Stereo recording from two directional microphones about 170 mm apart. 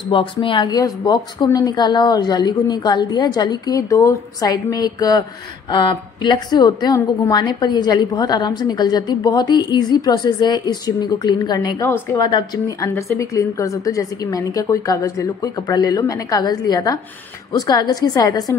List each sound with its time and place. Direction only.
0.1 s a woman's voice: 30° left (ahead or behind)